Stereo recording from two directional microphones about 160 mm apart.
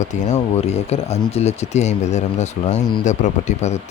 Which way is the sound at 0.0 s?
45° left (ahead or behind).